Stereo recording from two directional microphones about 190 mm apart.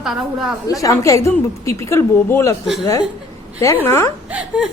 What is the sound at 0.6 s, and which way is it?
A woman's voice, 15° left (ahead or behind).